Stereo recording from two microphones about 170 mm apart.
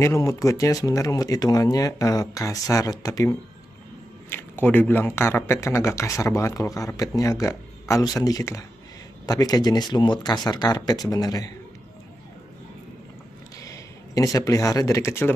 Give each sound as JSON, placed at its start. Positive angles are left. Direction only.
{"t": 0.0, "sound": "speech", "side_deg": 20}
{"t": 13.7, "sound": "speech", "side_deg": 20}